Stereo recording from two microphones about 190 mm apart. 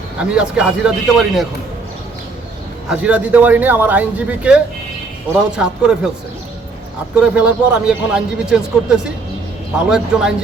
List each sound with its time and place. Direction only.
0.2 s a man's voice: 5° right (ahead or behind)
2.9 s a man's voice: 5° right (ahead or behind)
7.2 s a man's voice: 5° right (ahead or behind)